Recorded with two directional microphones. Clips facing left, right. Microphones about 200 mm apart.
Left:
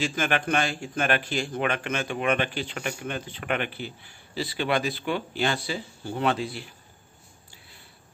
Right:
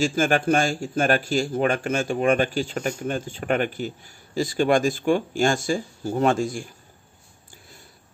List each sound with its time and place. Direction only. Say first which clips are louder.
0.0 s speech: right 6 dB; 40° right (ahead or behind)